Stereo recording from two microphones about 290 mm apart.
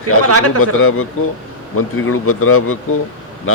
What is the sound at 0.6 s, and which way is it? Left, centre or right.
A man's voice, left.